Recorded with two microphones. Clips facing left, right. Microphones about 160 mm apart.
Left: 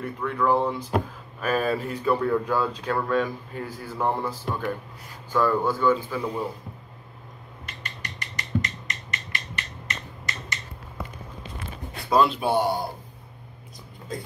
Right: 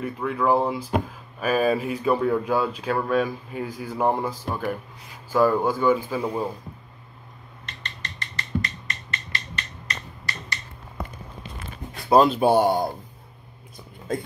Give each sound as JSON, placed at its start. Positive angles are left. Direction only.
{"t": 0.0, "sound": "speech", "side_deg": -10}
{"t": 7.6, "sound": "a sound", "side_deg": 10}
{"t": 12.1, "sound": "speech", "side_deg": -40}